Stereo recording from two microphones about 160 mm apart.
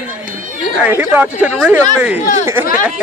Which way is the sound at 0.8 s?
10° right (ahead or behind).